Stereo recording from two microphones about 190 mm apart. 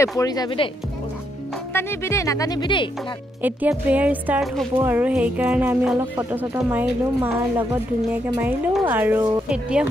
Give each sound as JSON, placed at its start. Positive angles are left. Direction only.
{"t": 0.2, "sound": "speech", "side_deg": 20}
{"t": 1.7, "sound": "speech", "side_deg": 10}
{"t": 3.4, "sound": "speech", "side_deg": -10}
{"t": 9.5, "sound": "speech", "side_deg": -5}